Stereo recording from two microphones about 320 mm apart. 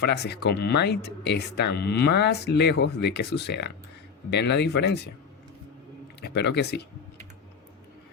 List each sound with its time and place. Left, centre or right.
0.0 s speech: left
6.2 s speech: left